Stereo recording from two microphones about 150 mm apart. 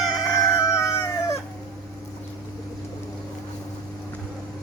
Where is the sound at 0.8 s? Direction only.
20° left (ahead or behind).